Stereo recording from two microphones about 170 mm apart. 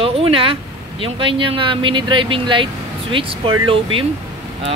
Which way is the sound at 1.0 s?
30° right (ahead or behind).